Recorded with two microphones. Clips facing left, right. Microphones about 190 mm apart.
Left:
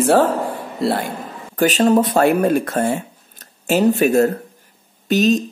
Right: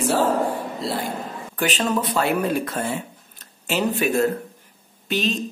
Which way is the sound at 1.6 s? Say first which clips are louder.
Left 9 dB; 40° left (ahead or behind).